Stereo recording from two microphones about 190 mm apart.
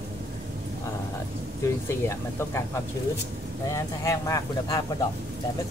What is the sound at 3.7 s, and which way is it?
Speech, 15° left (ahead or behind).